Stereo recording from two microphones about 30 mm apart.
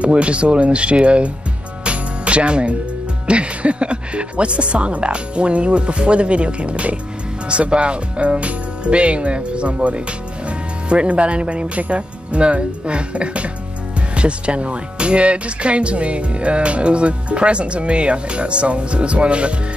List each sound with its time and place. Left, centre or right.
0.0 s speech: right
1.9 s music: right
3.3 s speech: right